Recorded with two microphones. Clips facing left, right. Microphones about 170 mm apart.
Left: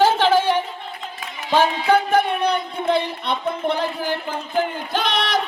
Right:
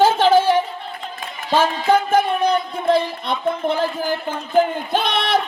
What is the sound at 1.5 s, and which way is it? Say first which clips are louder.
Music: even; 45° right (ahead or behind).